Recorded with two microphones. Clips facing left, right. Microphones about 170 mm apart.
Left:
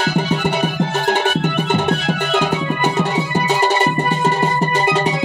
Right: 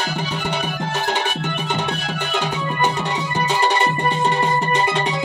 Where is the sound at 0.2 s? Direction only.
50° left (ahead or behind).